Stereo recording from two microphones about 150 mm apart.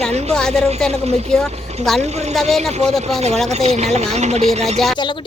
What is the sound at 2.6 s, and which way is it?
Speech, 45° right (ahead or behind).